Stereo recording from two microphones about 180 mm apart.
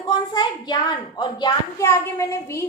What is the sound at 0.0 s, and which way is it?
A woman's voice, 25° left (ahead or behind).